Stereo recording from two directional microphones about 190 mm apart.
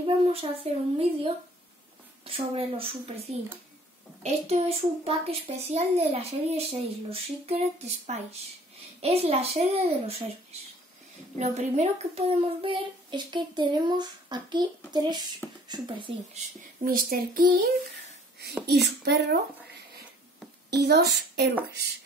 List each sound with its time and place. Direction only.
0.0 s a child's voice: 30° right (ahead or behind)
11.3 s a child's voice: 35° right (ahead or behind)
16.8 s speech: 50° right (ahead or behind)
18.7 s a woman's voice: 60° right (ahead or behind)
20.7 s a woman's voice: 55° right (ahead or behind)